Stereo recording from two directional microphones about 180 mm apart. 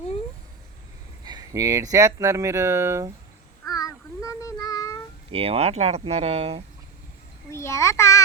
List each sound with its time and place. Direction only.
1.2 s speech: 20° right (ahead or behind)
3.7 s child singing: 20° left (ahead or behind)
5.3 s speech: 30° right (ahead or behind)
7.5 s a child's voice: 15° left (ahead or behind)